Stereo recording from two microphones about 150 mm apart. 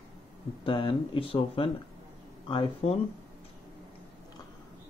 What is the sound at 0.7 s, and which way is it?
Speech, 35° left (ahead or behind).